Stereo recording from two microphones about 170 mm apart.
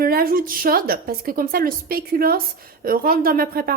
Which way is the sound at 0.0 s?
60° right (ahead or behind).